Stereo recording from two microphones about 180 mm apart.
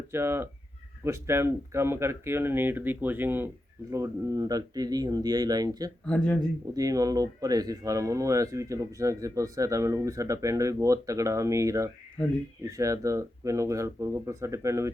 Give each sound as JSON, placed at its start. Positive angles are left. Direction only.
{"t": 0.1, "sound": "speech", "side_deg": -15}
{"t": 6.1, "sound": "speech", "side_deg": 5}
{"t": 6.7, "sound": "speech", "side_deg": -20}